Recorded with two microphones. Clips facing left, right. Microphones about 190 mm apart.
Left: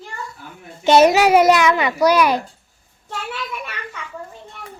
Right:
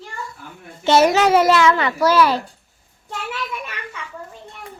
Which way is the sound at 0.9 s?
15° left (ahead or behind).